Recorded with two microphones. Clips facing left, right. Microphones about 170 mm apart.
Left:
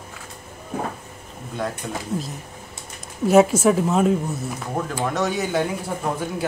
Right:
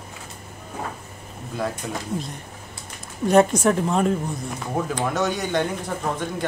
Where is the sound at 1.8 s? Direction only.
Centre (ahead or behind).